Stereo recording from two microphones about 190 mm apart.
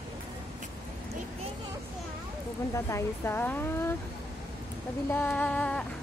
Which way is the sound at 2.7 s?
15° left (ahead or behind).